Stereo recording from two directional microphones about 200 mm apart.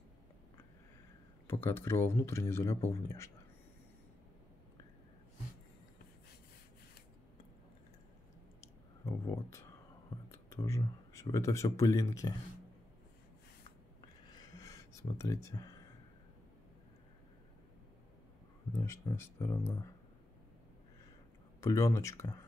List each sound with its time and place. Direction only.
1.5 s speech: 10° left (ahead or behind)
9.0 s a sound: 15° left (ahead or behind)
10.5 s speech: 15° left (ahead or behind)
14.2 s a sound: 20° left (ahead or behind)
18.8 s speech: 15° left (ahead or behind)
21.5 s speech: 15° left (ahead or behind)